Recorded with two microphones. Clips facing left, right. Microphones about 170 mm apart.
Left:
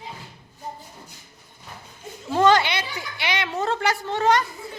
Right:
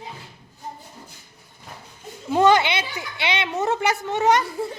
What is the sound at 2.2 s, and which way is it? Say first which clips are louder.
A child's voice: right 1 dB; 15° right (ahead or behind).